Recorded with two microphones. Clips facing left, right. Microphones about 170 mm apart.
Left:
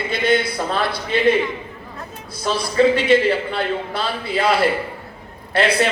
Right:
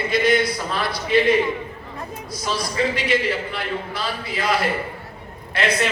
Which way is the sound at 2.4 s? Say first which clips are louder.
Left 7 dB; 30° left (ahead or behind).